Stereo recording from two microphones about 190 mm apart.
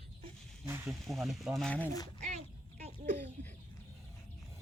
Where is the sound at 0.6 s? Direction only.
15° right (ahead or behind).